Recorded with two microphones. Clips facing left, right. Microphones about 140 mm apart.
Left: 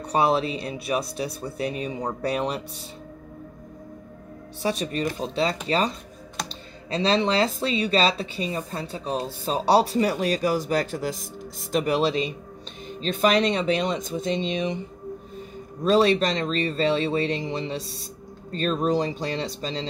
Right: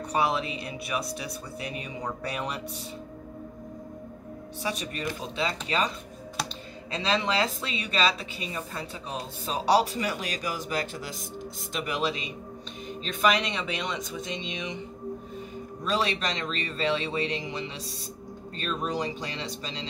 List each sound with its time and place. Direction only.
0.0 s speech: 30° left (ahead or behind)
4.6 s speech: 30° left (ahead or behind)
6.9 s speech: 35° left (ahead or behind)
15.8 s speech: 35° left (ahead or behind)